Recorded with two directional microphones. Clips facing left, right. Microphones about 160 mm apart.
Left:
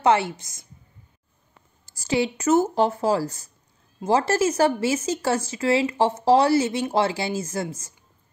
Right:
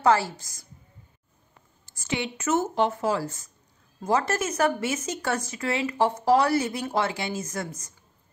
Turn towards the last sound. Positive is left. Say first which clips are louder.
# left 4 dB
turn(degrees=30)  # may be behind; listen again after turning